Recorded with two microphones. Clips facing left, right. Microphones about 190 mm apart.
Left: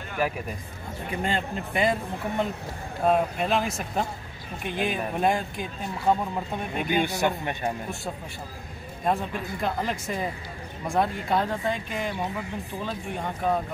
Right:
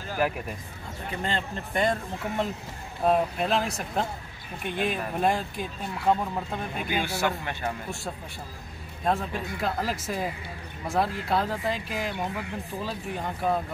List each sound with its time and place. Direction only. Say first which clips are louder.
1.1 s speech: left 3 dB; 10° left (ahead or behind)
7.1 s speech: left 2 dB; 15° left (ahead or behind)
9.0 s speech: left 1 dB; centre (ahead or behind)